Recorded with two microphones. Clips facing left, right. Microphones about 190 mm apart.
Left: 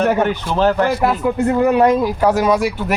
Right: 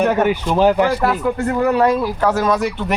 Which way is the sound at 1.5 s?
20° left (ahead or behind).